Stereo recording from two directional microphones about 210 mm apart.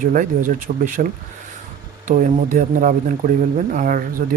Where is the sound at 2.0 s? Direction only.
40° right (ahead or behind).